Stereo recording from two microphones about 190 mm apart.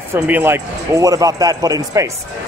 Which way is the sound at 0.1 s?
10° right (ahead or behind).